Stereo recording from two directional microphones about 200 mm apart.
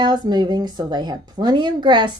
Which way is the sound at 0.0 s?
20° right (ahead or behind).